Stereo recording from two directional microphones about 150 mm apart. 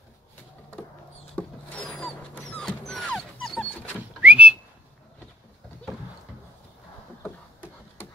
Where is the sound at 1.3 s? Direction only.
5° left (ahead or behind).